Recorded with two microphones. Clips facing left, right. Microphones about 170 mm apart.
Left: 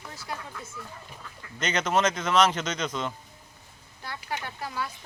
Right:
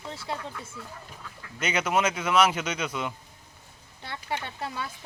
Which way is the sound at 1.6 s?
10° right (ahead or behind).